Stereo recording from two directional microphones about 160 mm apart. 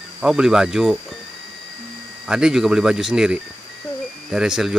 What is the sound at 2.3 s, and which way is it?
Speech, 5° right (ahead or behind).